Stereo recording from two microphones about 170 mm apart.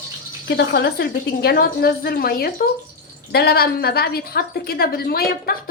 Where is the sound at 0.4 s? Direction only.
75° left (ahead or behind).